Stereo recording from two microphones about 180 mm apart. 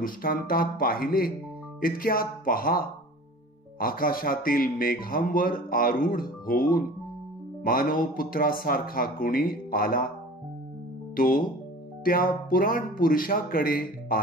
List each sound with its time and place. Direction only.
0.0 s speech: 55° left (ahead or behind)
11.1 s speech: 50° left (ahead or behind)